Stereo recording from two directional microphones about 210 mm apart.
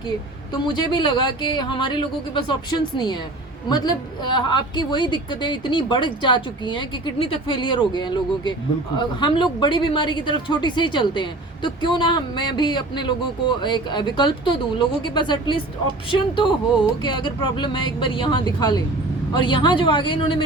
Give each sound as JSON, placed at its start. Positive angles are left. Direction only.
{"t": 0.5, "sound": "a woman's voice", "side_deg": 20}